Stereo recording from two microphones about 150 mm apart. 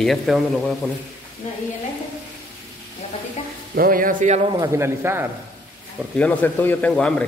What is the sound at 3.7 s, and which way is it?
Speech, 70° right (ahead or behind).